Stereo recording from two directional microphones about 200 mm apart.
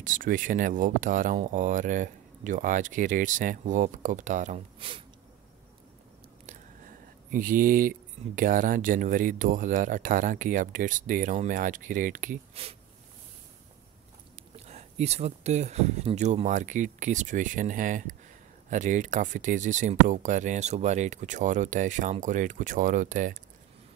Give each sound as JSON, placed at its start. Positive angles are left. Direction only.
{"t": 0.0, "sound": "speech", "side_deg": -40}
{"t": 4.7, "sound": "speech", "side_deg": -25}
{"t": 7.2, "sound": "speech", "side_deg": -45}
{"t": 14.3, "sound": "speech", "side_deg": -35}